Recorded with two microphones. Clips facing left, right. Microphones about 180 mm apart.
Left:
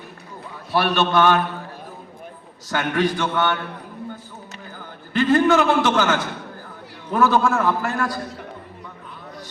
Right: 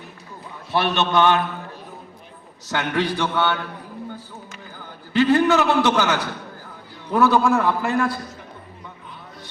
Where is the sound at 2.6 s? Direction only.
20° right (ahead or behind).